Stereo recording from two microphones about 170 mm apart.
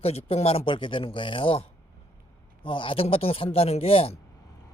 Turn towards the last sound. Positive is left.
turn(degrees=35)  # may be behind; listen again after turning